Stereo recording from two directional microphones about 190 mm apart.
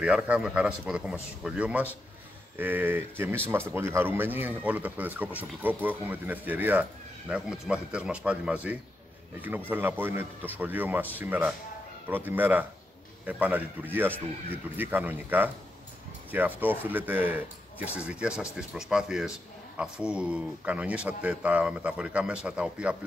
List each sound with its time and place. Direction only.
0.0 s a man's voice: 5° right (ahead or behind)